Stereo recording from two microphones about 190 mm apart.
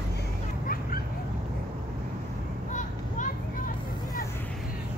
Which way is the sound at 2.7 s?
40° left (ahead or behind).